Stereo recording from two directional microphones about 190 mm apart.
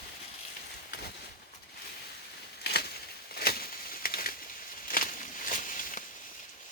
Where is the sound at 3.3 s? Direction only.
55° left (ahead or behind).